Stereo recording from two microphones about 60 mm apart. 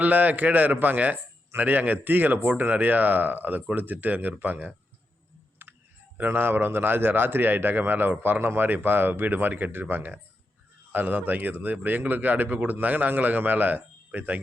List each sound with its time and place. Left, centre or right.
0.0 s a man's voice: right
5.6 s clicking: right
6.1 s a man's voice: right